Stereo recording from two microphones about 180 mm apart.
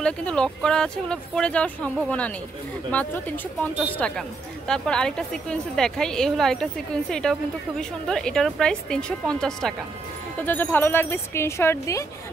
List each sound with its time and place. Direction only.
0.0 s a woman's voice: 5° left (ahead or behind)